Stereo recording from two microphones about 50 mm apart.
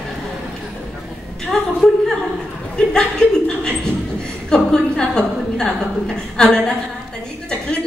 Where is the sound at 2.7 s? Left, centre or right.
Centre.